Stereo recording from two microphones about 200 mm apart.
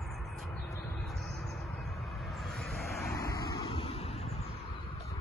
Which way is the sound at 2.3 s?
Centre (ahead or behind).